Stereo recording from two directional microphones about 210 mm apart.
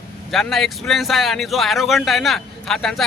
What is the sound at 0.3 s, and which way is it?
Speech, centre (ahead or behind).